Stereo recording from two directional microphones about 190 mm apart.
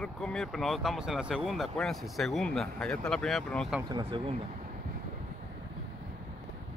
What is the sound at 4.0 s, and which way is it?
Speech, 30° right (ahead or behind).